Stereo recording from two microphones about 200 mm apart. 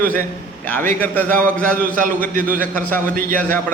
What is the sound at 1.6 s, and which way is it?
Speech, 5° left (ahead or behind).